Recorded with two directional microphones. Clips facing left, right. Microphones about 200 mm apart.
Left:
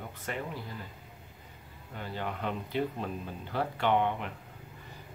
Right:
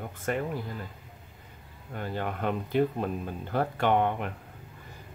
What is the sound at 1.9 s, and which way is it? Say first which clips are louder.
Speech: right 4 dB; 50° right (ahead or behind).